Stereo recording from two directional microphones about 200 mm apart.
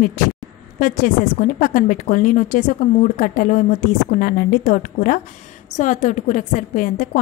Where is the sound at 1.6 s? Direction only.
45° left (ahead or behind).